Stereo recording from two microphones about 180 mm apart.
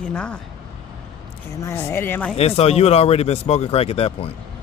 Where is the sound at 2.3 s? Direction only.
35° left (ahead or behind).